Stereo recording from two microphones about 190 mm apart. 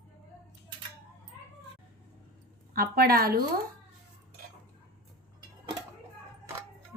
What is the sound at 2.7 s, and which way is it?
Speech, 50° right (ahead or behind).